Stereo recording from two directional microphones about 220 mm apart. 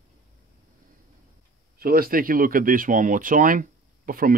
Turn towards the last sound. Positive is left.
turn(degrees=-40)  # may be behind; listen again after turning